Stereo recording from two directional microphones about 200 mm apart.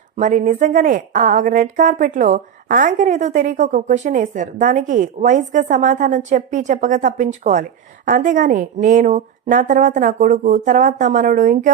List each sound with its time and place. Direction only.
0.2 s a woman's voice: 40° right (ahead or behind)